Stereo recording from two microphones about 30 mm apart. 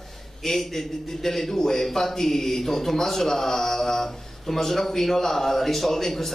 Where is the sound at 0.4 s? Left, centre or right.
Centre.